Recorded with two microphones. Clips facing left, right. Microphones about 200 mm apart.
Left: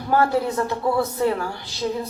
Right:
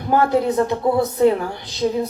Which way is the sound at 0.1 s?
20° right (ahead or behind).